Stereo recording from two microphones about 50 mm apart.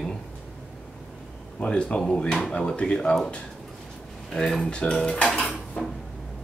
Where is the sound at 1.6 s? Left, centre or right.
Left.